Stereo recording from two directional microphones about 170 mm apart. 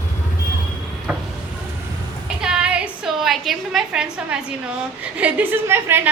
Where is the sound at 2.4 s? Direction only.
5° right (ahead or behind).